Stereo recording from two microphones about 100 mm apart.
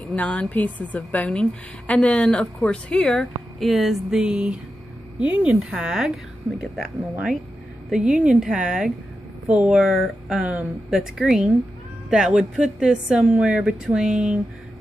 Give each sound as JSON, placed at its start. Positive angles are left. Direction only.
{"t": 0.1, "sound": "a woman's voice", "side_deg": 15}
{"t": 9.8, "sound": "speech", "side_deg": -5}